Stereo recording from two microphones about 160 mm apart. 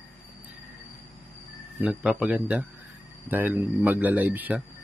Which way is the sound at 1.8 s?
10° right (ahead or behind).